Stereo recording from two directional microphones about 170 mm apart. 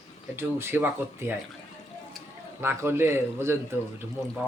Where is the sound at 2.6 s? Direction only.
15° right (ahead or behind).